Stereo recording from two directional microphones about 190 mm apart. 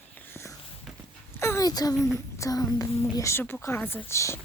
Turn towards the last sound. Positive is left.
turn(degrees=15)  # may be behind; listen again after turning